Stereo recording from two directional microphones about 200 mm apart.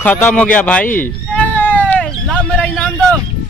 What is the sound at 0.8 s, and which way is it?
Speech, 45° left (ahead or behind).